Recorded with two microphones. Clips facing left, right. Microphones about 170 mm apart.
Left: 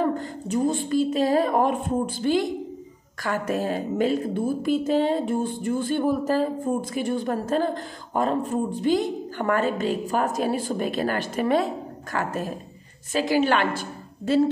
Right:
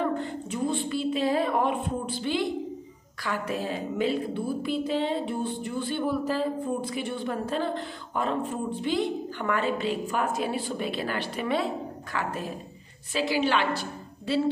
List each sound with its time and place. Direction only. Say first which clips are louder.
0.0 s a woman's voice: left 3 dB; 40° left (ahead or behind)